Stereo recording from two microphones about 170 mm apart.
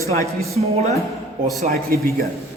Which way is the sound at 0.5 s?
40° right (ahead or behind).